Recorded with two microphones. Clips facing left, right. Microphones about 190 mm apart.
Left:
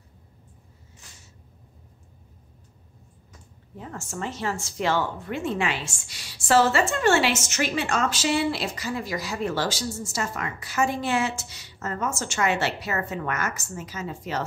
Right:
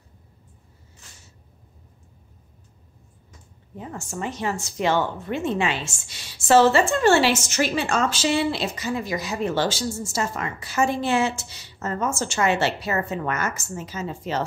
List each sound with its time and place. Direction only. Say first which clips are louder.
3.7 s a woman's voice: right 2 dB; 15° right (ahead or behind)